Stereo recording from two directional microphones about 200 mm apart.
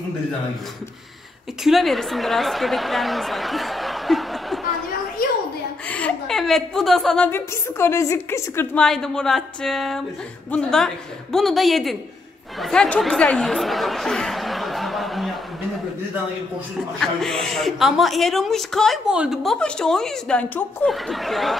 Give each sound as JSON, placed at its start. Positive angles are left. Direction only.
{"t": 1.6, "sound": "a woman's voice", "side_deg": 0}
{"t": 5.2, "sound": "a sound", "side_deg": 45}
{"t": 5.9, "sound": "a woman's voice", "side_deg": 5}
{"t": 17.0, "sound": "a woman's voice", "side_deg": 5}